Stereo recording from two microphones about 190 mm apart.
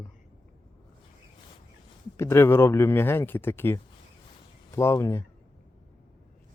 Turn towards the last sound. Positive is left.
turn(degrees=15)  # may be behind; listen again after turning